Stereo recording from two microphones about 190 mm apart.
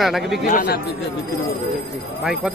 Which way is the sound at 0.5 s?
45° left (ahead or behind).